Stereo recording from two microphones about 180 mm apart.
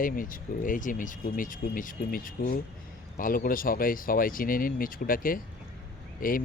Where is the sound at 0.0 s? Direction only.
50° left (ahead or behind).